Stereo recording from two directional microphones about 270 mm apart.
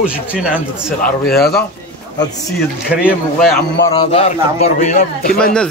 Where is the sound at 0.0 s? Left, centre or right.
Centre.